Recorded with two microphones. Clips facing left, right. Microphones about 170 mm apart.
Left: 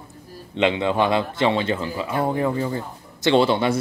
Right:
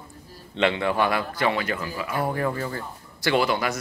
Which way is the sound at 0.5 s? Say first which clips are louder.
Left 3 dB; 15° left (ahead or behind).